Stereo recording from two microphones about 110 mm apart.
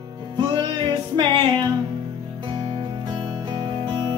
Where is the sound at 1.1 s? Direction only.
45° right (ahead or behind).